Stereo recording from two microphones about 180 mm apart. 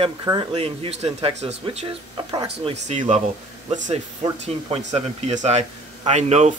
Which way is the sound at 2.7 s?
40° right (ahead or behind).